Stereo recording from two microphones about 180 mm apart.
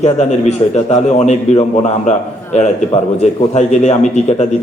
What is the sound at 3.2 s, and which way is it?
Speech, 40° left (ahead or behind).